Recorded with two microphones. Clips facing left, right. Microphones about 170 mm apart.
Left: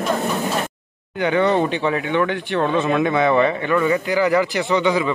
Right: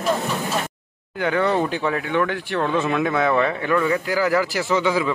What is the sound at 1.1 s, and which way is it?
Speech, centre (ahead or behind).